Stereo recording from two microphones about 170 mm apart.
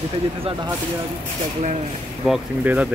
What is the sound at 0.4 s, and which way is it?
Speech, 30° right (ahead or behind).